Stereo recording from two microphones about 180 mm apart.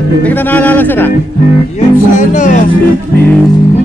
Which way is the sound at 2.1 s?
45° left (ahead or behind).